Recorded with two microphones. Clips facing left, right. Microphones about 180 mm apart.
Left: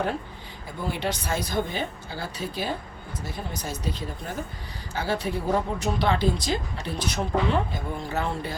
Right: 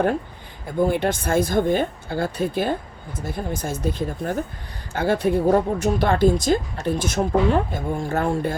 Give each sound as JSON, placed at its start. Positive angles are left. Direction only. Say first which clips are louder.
{"t": 0.9, "sound": "a woman's voice", "louder": "right 2 dB", "side_deg": -50}